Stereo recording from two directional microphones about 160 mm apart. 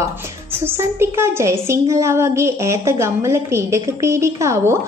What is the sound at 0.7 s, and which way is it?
A woman's voice, 15° right (ahead or behind).